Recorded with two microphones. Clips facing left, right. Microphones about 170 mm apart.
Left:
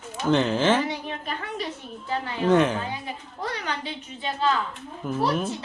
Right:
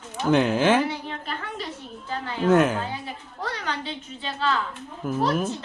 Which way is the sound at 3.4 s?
15° left (ahead or behind).